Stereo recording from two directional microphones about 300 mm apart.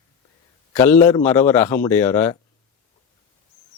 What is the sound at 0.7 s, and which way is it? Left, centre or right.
A man's voice, centre.